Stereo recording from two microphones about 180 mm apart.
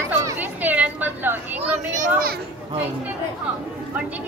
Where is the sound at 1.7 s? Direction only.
45° right (ahead or behind).